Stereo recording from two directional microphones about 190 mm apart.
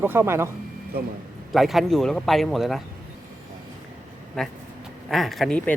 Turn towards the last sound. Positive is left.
turn(degrees=5)  # may be behind; listen again after turning